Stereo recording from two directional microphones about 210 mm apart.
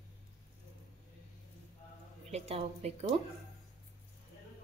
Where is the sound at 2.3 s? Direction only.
30° right (ahead or behind).